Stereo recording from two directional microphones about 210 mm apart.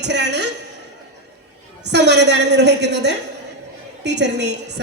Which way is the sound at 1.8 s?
55° right (ahead or behind).